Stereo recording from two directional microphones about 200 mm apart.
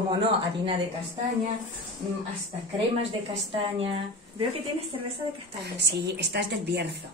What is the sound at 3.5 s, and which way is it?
Speech, 30° right (ahead or behind).